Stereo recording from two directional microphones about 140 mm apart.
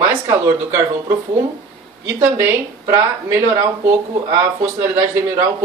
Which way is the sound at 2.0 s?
20° right (ahead or behind).